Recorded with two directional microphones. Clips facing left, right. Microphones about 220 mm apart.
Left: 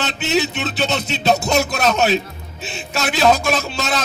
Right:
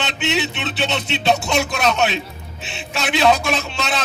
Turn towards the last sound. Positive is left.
turn(degrees=40)  # may be behind; listen again after turning